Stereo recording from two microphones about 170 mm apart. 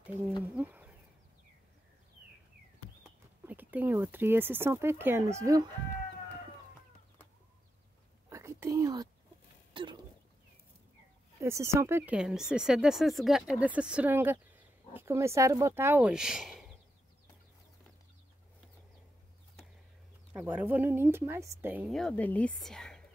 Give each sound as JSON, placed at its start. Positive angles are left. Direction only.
{"t": 0.4, "sound": "speech", "side_deg": -10}
{"t": 3.4, "sound": "speech", "side_deg": -10}
{"t": 8.3, "sound": "whispering", "side_deg": -15}
{"t": 9.8, "sound": "a sound", "side_deg": -30}
{"t": 11.3, "sound": "speech", "side_deg": -15}
{"t": 12.2, "sound": "speech", "side_deg": -5}
{"t": 20.3, "sound": "speech", "side_deg": -10}
{"t": 21.8, "sound": "speech", "side_deg": 5}